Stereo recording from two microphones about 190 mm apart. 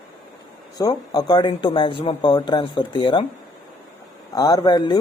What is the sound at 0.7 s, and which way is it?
Speech, 20° left (ahead or behind).